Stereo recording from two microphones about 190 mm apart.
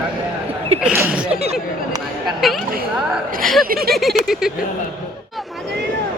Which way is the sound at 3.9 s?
Centre (ahead or behind).